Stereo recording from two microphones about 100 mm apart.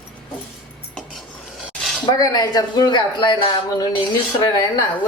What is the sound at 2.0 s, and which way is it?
A woman's voice, 40° left (ahead or behind).